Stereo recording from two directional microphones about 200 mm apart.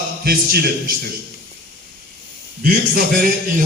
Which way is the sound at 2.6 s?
45° right (ahead or behind).